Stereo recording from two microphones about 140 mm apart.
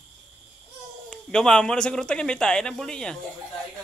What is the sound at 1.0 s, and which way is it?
Speech, 5° left (ahead or behind).